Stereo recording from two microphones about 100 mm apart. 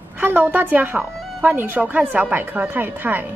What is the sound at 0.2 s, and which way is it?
A woman's voice, 20° right (ahead or behind).